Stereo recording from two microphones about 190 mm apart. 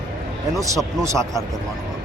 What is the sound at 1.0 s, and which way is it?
Speech, 15° right (ahead or behind).